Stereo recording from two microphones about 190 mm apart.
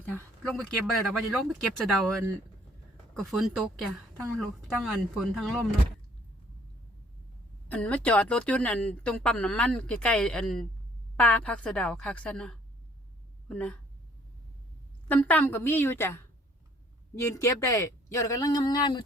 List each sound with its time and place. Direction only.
0.4 s speech: centre (ahead or behind)
3.2 s speech: centre (ahead or behind)
7.7 s speech: 5° left (ahead or behind)
15.0 s speech: 10° left (ahead or behind)